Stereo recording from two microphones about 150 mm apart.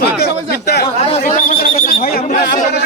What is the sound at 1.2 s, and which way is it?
Speech, 70° left (ahead or behind).